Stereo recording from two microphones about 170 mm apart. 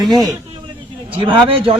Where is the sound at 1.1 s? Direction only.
30° right (ahead or behind).